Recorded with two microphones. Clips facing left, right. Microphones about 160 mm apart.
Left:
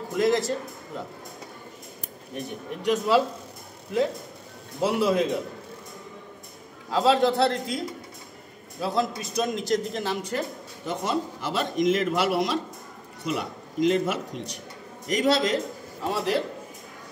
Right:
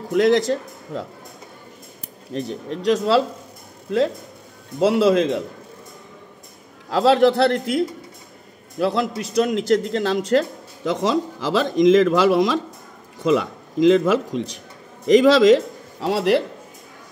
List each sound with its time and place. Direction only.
0.1 s a man's voice: 90° right
2.3 s a man's voice: 90° right
4.7 s a man's voice: 90° right
6.9 s a man's voice: 90° right